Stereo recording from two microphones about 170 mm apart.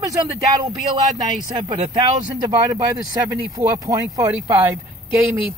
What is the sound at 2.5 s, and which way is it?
Speech, 20° right (ahead or behind).